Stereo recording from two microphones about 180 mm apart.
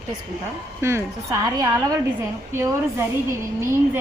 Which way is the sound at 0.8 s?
15° right (ahead or behind).